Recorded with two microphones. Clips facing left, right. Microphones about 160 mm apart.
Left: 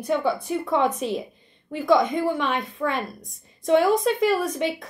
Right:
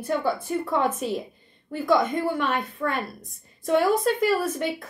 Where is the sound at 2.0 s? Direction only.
Centre (ahead or behind).